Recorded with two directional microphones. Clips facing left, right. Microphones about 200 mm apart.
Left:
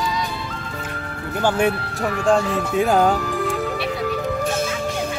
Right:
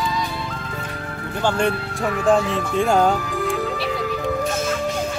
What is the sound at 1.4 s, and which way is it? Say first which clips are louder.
Speech: left 1 dB; 5° left (ahead or behind).